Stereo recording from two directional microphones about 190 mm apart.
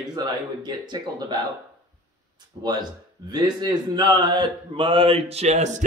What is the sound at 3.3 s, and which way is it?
A man's voice, 20° right (ahead or behind).